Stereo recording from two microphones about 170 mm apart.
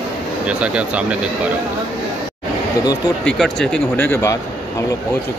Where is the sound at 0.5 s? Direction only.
5° right (ahead or behind).